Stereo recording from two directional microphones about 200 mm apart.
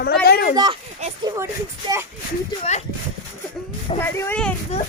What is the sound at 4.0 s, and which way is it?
Speech, 10° left (ahead or behind).